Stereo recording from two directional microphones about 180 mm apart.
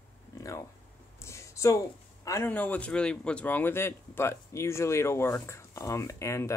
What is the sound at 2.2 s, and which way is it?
Speech, 15° left (ahead or behind).